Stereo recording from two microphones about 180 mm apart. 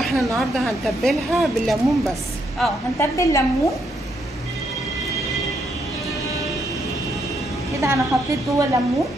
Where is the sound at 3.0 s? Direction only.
15° left (ahead or behind).